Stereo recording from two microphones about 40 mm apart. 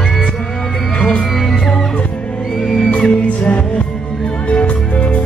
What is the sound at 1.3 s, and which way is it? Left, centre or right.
Music, centre.